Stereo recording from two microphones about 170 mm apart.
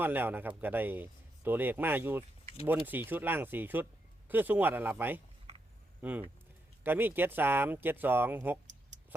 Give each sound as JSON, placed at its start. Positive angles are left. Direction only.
{"t": 0.0, "sound": "speech", "side_deg": -10}